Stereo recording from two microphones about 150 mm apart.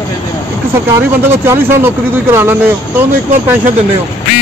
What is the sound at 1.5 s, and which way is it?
Speech, 15° right (ahead or behind).